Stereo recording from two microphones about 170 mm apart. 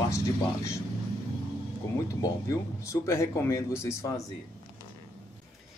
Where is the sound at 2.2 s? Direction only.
20° left (ahead or behind).